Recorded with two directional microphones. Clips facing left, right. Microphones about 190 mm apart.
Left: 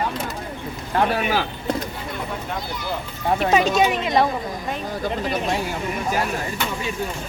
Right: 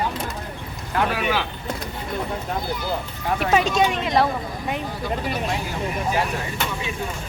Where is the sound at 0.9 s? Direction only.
40° left (ahead or behind).